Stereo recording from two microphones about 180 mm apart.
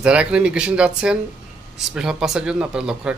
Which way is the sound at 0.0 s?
5° right (ahead or behind).